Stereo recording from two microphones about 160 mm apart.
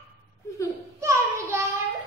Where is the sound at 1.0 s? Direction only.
15° right (ahead or behind).